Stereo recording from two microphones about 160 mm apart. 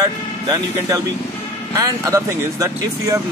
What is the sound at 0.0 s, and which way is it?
Speech, 20° right (ahead or behind).